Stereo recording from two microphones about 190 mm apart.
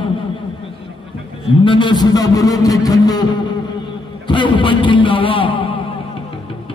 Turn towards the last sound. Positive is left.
turn(degrees=25)  # may be behind; listen again after turning